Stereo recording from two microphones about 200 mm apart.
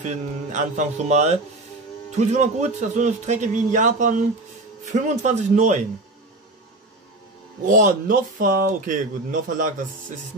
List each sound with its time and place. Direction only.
0.0 s speech: 35° right (ahead or behind)
7.6 s speech: 45° right (ahead or behind)